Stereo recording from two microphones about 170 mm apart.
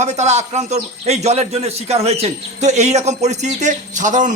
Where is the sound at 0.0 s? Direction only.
40° right (ahead or behind).